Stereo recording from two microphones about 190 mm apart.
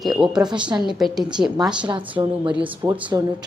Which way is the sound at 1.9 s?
25° right (ahead or behind).